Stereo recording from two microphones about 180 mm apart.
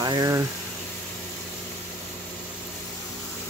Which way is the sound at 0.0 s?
20° right (ahead or behind).